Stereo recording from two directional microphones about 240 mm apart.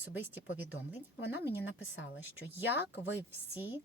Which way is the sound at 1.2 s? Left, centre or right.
Left.